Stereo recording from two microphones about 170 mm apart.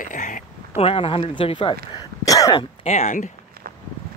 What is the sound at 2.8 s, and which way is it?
Speech, 40° left (ahead or behind).